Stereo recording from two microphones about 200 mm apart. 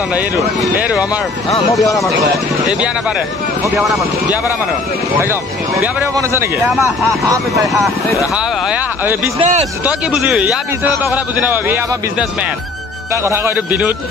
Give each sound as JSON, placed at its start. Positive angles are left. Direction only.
{"t": 0.1, "sound": "speech", "side_deg": -5}
{"t": 1.7, "sound": "speech", "side_deg": 15}
{"t": 5.2, "sound": "a man's voice", "side_deg": -10}
{"t": 6.7, "sound": "speech", "side_deg": 0}
{"t": 7.1, "sound": "a man's voice", "side_deg": -15}
{"t": 9.4, "sound": "speech", "side_deg": -30}
{"t": 9.8, "sound": "a man's voice", "side_deg": -5}